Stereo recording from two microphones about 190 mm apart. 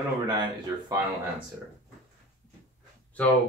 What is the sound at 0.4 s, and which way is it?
Speech, 20° right (ahead or behind).